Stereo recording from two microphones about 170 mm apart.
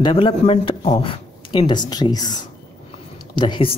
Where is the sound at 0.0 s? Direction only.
30° left (ahead or behind).